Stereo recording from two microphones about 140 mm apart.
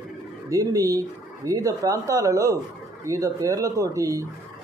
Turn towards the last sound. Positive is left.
turn(degrees=-25)  # may be behind; listen again after turning